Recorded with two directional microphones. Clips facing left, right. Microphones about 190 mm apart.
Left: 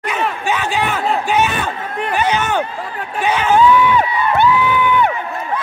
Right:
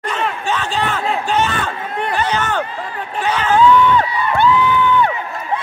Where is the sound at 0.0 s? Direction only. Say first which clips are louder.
Left 1 dB; 10° left (ahead or behind).